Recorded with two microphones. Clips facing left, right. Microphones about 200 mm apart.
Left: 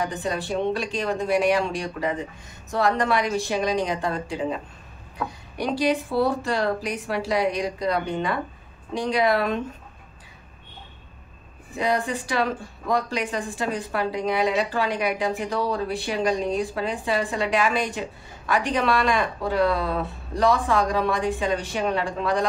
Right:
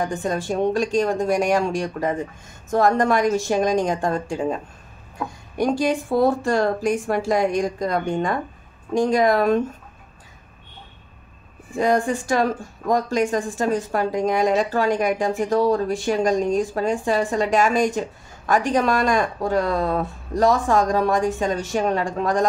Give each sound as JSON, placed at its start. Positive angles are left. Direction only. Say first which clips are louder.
{"t": 0.0, "sound": "speech", "louder": "right 3 dB", "side_deg": -45}
{"t": 5.6, "sound": "speech", "louder": "right 3 dB", "side_deg": -45}
{"t": 11.7, "sound": "speech", "louder": "right 5 dB", "side_deg": -45}